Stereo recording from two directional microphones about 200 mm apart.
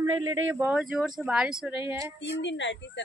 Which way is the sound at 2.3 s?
65° left (ahead or behind).